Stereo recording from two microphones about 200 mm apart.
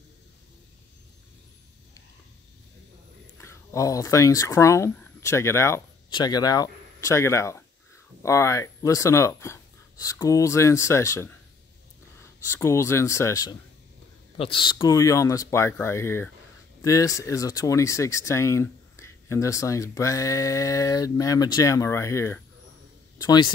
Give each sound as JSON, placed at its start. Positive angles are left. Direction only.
{"t": 3.3, "sound": "speech", "side_deg": 15}